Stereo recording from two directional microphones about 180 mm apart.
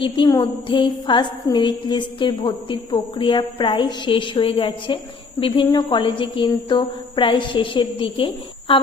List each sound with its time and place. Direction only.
0.0 s a woman's voice: 20° left (ahead or behind)